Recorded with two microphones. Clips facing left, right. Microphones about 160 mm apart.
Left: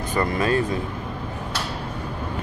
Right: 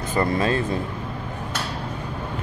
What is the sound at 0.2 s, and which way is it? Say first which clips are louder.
Speech: right 1 dB; 25° right (ahead or behind).